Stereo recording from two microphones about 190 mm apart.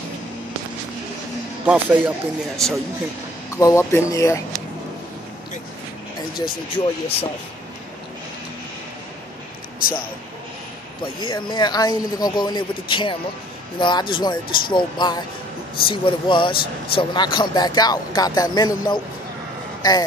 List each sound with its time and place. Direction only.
1.7 s a man's voice: 5° right (ahead or behind)
3.5 s speech: 15° left (ahead or behind)
6.3 s a man's voice: 25° left (ahead or behind)
11.1 s a man's voice: 25° left (ahead or behind)